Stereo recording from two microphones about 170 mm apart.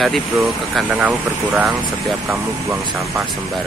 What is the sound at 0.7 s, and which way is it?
Speech, 10° right (ahead or behind).